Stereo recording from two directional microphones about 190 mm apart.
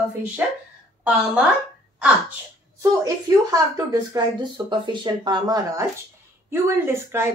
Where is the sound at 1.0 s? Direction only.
5° right (ahead or behind).